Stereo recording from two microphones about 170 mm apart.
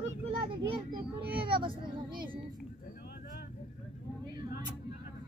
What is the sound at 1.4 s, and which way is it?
Speech, 30° right (ahead or behind).